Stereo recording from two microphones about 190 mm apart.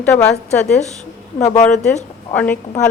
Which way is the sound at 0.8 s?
35° left (ahead or behind).